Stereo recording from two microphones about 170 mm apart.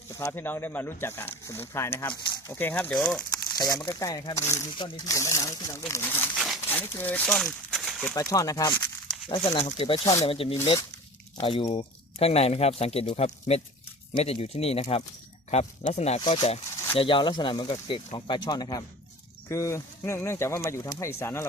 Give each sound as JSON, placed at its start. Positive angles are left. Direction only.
{"t": 0.1, "sound": "speech", "side_deg": 15}
{"t": 3.8, "sound": "speech", "side_deg": 20}
{"t": 4.7, "sound": "speech", "side_deg": 30}
{"t": 8.1, "sound": "speech", "side_deg": 20}
{"t": 9.3, "sound": "speech", "side_deg": 35}